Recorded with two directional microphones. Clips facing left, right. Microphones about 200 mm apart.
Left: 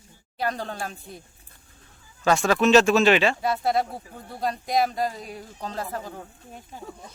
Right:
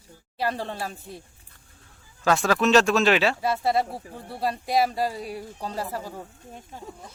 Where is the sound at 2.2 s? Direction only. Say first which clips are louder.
Left 1 dB; centre (ahead or behind).